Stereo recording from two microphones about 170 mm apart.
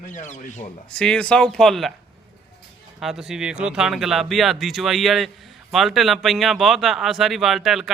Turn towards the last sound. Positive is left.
turn(degrees=0)  # may be behind; listen again after turning